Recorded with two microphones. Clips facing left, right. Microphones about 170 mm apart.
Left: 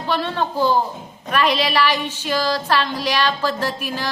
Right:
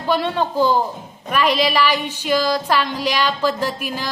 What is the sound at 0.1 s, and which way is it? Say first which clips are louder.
Speech: right 3 dB; 15° right (ahead or behind).